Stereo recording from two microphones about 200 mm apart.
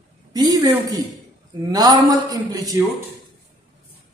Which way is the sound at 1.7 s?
20° right (ahead or behind).